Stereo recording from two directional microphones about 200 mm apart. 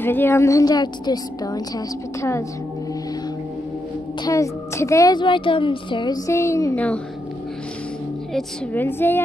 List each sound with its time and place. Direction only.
0.0 s speech: 10° left (ahead or behind)
4.2 s speech: 15° left (ahead or behind)
8.3 s speech: 5° left (ahead or behind)